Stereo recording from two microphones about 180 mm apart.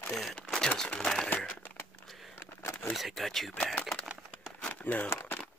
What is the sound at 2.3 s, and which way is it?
Vehicle, 15° left (ahead or behind).